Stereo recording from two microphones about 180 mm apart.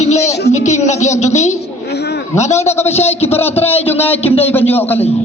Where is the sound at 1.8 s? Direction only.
70° left (ahead or behind).